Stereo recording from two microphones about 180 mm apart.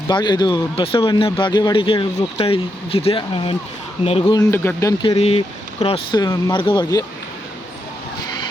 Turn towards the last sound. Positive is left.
turn(degrees=20)  # may be behind; listen again after turning